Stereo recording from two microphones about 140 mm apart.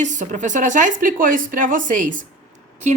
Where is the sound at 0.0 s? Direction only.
60° right (ahead or behind).